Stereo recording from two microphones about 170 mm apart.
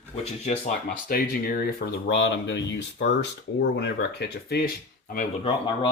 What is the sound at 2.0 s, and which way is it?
Speech, 90° left.